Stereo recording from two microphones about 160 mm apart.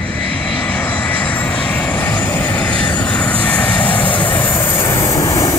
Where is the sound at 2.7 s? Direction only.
30° left (ahead or behind).